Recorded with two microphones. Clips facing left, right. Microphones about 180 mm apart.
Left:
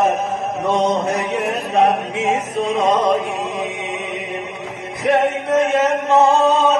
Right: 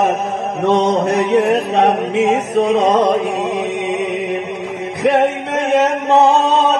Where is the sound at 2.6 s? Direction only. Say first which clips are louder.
Right 4 dB; 70° right (ahead or behind).